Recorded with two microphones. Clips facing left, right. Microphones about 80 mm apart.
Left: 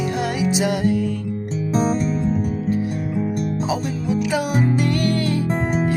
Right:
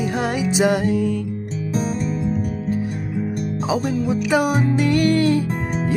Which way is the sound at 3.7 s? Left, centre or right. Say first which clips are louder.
Right 2 dB; right.